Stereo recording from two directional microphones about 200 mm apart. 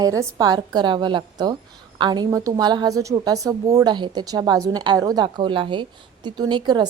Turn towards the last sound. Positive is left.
turn(degrees=-20)  # may be behind; listen again after turning